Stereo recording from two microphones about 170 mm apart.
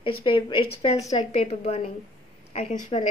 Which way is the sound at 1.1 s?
40° left (ahead or behind).